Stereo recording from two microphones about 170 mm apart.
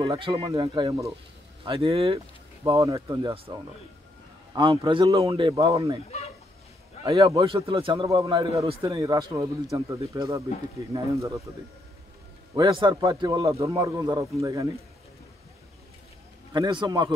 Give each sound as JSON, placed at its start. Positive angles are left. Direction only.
{"t": 0.2, "sound": "a man's voice", "side_deg": -30}
{"t": 2.6, "sound": "a man's voice", "side_deg": -20}
{"t": 4.6, "sound": "a man's voice", "side_deg": -30}
{"t": 7.1, "sound": "a man's voice", "side_deg": -20}
{"t": 7.4, "sound": "a man's voice", "side_deg": -30}
{"t": 12.5, "sound": "a man's voice", "side_deg": -25}
{"t": 16.5, "sound": "a man's voice", "side_deg": -25}